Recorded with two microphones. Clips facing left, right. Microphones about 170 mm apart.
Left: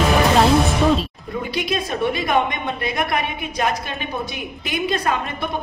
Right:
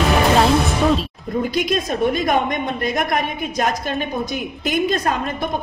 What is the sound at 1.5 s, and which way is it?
A woman's voice, 45° right (ahead or behind).